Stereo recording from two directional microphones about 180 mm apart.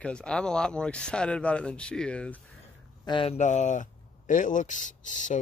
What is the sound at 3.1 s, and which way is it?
A man's voice, 30° left (ahead or behind).